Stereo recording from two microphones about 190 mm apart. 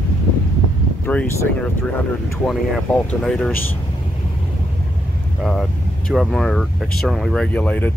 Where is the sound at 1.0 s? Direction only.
10° left (ahead or behind).